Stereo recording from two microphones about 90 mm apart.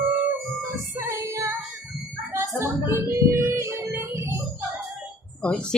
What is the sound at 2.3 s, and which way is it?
Music, 30° right (ahead or behind).